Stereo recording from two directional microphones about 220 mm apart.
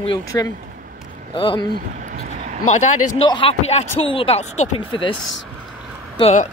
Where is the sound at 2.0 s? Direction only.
35° right (ahead or behind).